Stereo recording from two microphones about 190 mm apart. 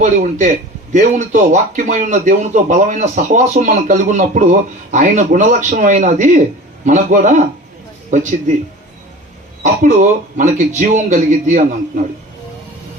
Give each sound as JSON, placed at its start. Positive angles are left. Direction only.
{"t": 0.0, "sound": "speech", "side_deg": -40}
{"t": 9.8, "sound": "speech", "side_deg": -40}